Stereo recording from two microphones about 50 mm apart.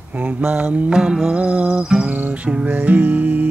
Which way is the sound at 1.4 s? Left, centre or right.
Right.